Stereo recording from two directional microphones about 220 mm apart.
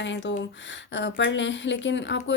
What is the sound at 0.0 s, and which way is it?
Speech, 55° left (ahead or behind).